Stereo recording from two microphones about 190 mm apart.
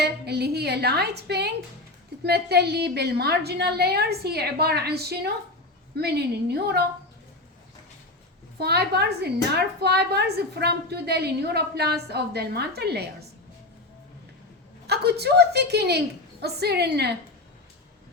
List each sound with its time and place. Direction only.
0.0 s a woman's voice: 60° right (ahead or behind)
8.5 s a woman's voice: 60° right (ahead or behind)
14.8 s a woman's voice: 60° right (ahead or behind)